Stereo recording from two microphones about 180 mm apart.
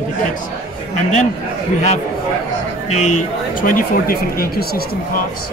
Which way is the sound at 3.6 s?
50° left (ahead or behind).